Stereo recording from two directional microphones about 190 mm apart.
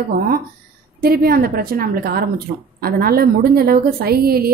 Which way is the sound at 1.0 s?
50° right (ahead or behind).